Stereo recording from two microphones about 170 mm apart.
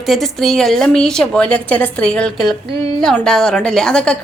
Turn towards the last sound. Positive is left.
turn(degrees=5)  # may be behind; listen again after turning